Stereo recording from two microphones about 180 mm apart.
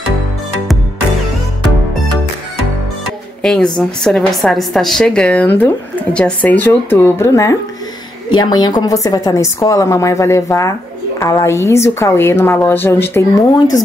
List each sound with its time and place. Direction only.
3.4 s a woman's voice: 5° left (ahead or behind)